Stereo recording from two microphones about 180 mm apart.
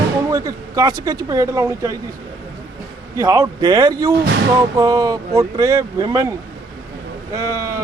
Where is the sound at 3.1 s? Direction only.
20° right (ahead or behind).